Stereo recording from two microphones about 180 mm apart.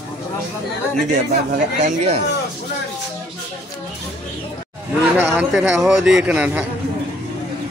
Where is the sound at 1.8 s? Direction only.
40° right (ahead or behind).